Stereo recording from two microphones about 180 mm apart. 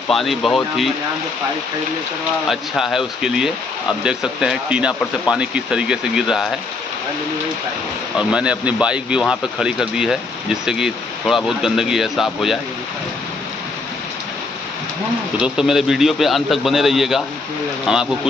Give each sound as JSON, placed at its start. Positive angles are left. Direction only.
{"t": 0.1, "sound": "speech", "side_deg": 0}
{"t": 2.5, "sound": "speech", "side_deg": 0}
{"t": 8.2, "sound": "speech", "side_deg": -5}
{"t": 15.4, "sound": "speech", "side_deg": -5}